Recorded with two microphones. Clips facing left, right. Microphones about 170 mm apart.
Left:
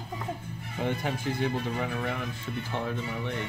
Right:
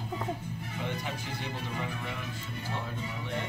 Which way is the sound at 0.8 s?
50° left (ahead or behind).